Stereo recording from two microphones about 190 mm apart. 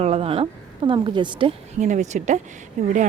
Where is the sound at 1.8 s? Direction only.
40° right (ahead or behind).